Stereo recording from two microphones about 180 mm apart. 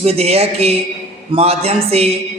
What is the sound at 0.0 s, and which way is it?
A man's voice, 35° right (ahead or behind).